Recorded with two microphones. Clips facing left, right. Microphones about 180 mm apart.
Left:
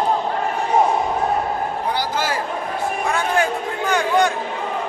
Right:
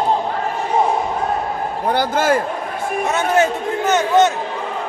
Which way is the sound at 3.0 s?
20° right (ahead or behind).